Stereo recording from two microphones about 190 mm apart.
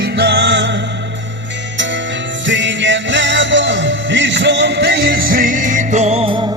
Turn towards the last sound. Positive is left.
turn(degrees=-30)  # may be behind; listen again after turning